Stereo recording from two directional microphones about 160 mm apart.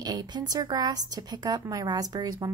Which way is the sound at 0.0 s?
25° right (ahead or behind).